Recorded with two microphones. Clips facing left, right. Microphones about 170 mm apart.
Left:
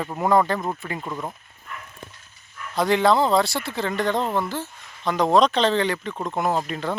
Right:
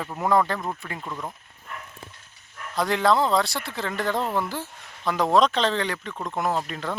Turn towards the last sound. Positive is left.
turn(degrees=0)  # may be behind; listen again after turning